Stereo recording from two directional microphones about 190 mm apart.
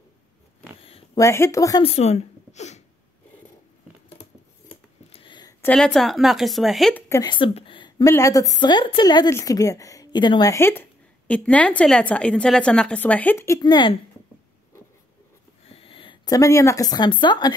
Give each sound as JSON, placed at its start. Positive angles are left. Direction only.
{"t": 1.1, "sound": "a woman's voice", "side_deg": 15}
{"t": 1.8, "sound": "a woman's voice", "side_deg": 35}
{"t": 4.6, "sound": "scissors", "side_deg": 30}
{"t": 5.6, "sound": "speech", "side_deg": 5}
{"t": 7.1, "sound": "a woman's voice", "side_deg": 20}
{"t": 15.7, "sound": "a woman's voice", "side_deg": 30}